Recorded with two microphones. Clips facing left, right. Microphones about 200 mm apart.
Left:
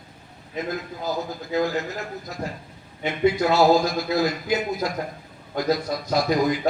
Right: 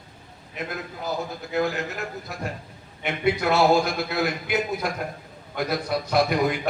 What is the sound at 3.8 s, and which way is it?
A man's voice, 60° right (ahead or behind).